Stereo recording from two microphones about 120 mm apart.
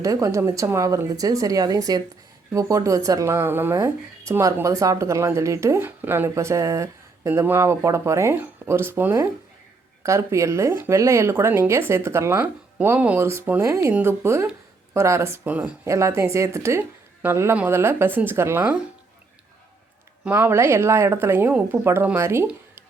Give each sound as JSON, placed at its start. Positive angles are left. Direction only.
{"t": 0.0, "sound": "speech", "side_deg": -25}
{"t": 15.4, "sound": "speech", "side_deg": -10}
{"t": 15.8, "sound": "speech", "side_deg": -25}
{"t": 20.2, "sound": "speech", "side_deg": -15}